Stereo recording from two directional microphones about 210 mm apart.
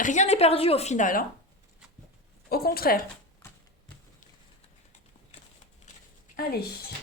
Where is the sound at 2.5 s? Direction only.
45° left (ahead or behind).